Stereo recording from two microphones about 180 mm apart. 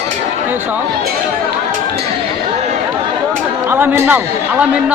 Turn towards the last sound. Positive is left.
turn(degrees=-10)  # may be behind; listen again after turning